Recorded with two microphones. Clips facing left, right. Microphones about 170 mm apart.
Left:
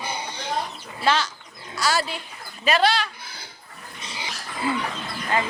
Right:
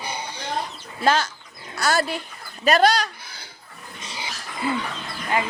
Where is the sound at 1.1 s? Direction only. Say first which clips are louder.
Right 2 dB; 45° right (ahead or behind).